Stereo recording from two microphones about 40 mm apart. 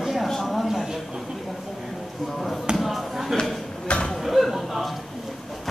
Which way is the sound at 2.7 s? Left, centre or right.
Centre.